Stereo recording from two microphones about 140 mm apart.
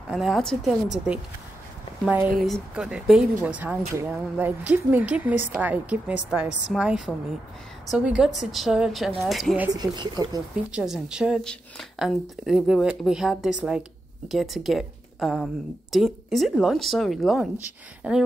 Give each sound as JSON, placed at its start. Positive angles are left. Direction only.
{"t": 0.1, "sound": "speech", "side_deg": 0}
{"t": 9.7, "sound": "speech", "side_deg": -30}
{"t": 10.5, "sound": "speech", "side_deg": -5}